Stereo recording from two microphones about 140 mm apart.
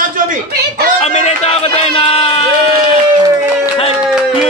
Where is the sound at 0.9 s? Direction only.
50° left (ahead or behind).